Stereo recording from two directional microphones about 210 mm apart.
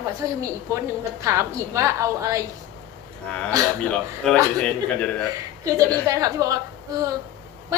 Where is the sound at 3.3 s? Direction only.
5° left (ahead or behind).